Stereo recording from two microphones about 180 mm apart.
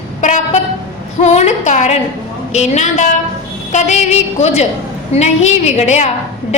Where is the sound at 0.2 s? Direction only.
40° left (ahead or behind).